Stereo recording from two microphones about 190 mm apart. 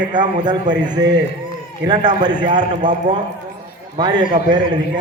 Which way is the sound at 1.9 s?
20° right (ahead or behind).